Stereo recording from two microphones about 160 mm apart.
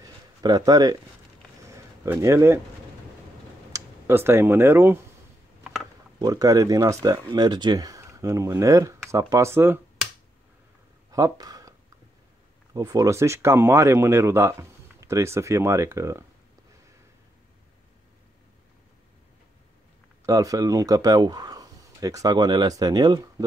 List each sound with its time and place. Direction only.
0.0 s a sound: 25° right (ahead or behind)
2.0 s speech: 15° right (ahead or behind)
3.7 s speech: 15° right (ahead or behind)
5.6 s mechanisms: centre (ahead or behind)
6.1 s speech: 25° right (ahead or behind)
11.1 s a sound: 20° right (ahead or behind)
12.7 s speech: 20° right (ahead or behind)
20.2 s speech: 20° right (ahead or behind)